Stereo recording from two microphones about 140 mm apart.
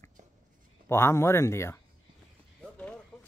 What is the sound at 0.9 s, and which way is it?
Speech, 20° left (ahead or behind).